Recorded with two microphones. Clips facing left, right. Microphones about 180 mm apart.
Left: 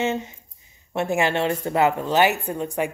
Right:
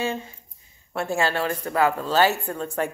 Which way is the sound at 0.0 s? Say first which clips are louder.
Left 3 dB; 20° left (ahead or behind).